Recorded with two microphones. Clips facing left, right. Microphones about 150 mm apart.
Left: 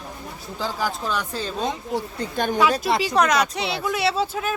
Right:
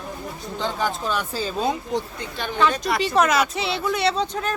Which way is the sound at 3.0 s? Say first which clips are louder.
Right 4 dB; centre (ahead or behind).